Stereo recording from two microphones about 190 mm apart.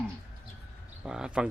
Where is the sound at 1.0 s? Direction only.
5° right (ahead or behind).